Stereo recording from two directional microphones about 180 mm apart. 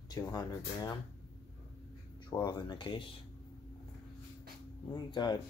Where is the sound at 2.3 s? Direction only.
25° left (ahead or behind).